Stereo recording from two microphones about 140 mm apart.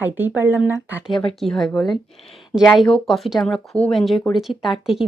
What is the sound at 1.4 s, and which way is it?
Speech, centre (ahead or behind).